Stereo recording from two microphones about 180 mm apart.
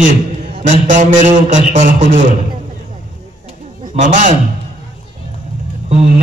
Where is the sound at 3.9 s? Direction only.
40° right (ahead or behind).